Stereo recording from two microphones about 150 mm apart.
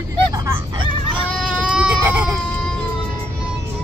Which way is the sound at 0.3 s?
20° right (ahead or behind).